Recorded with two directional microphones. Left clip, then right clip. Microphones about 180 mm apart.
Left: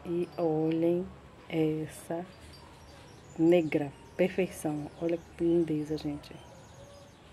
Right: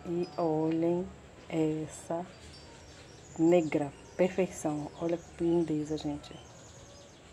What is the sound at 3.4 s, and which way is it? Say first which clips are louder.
Speech: left 1 dB; 15° left (ahead or behind).